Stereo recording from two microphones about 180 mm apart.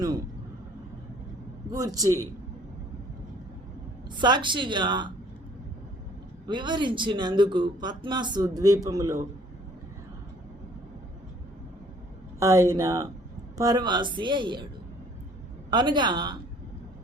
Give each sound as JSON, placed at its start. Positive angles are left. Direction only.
{"t": 2.0, "sound": "speech", "side_deg": -15}
{"t": 4.2, "sound": "speech", "side_deg": -25}
{"t": 6.5, "sound": "speech", "side_deg": -25}
{"t": 12.4, "sound": "speech", "side_deg": -15}
{"t": 15.7, "sound": "speech", "side_deg": -25}